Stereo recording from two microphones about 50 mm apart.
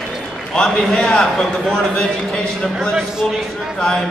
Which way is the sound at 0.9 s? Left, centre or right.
Centre.